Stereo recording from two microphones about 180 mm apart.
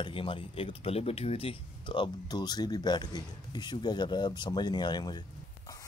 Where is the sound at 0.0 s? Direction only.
30° left (ahead or behind).